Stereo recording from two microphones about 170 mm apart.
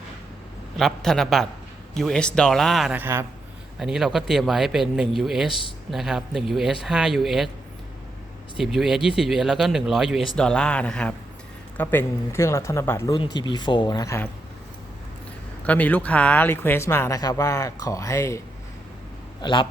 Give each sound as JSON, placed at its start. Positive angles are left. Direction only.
{"t": 0.8, "sound": "speech", "side_deg": 0}
{"t": 3.0, "sound": "a man's voice", "side_deg": -15}
{"t": 3.8, "sound": "speech", "side_deg": -5}
{"t": 8.5, "sound": "speech", "side_deg": 0}
{"t": 13.1, "sound": "speech", "side_deg": 25}
{"t": 15.6, "sound": "speech", "side_deg": 10}
{"t": 19.4, "sound": "a man's voice", "side_deg": 25}